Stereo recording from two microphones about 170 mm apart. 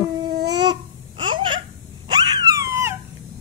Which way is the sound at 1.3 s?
25° right (ahead or behind).